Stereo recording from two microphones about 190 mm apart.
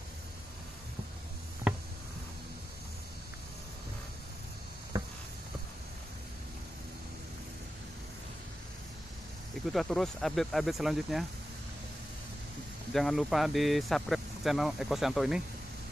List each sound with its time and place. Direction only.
4.9 s a sound: 20° right (ahead or behind)
9.7 s speech: centre (ahead or behind)
12.9 s speech: centre (ahead or behind)